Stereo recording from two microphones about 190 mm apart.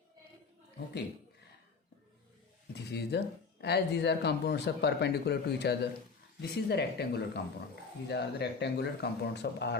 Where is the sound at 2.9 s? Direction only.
60° left (ahead or behind).